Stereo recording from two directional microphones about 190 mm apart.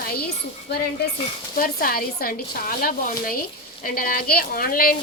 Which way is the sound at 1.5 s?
50° left (ahead or behind).